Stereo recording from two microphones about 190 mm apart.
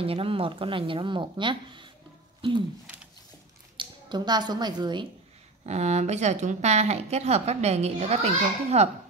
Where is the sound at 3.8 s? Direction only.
20° right (ahead or behind).